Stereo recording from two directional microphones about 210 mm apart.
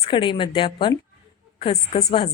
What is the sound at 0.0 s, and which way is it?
A woman's voice, 25° left (ahead or behind).